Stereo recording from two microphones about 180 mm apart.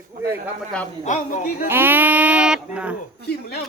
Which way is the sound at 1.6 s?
10° right (ahead or behind).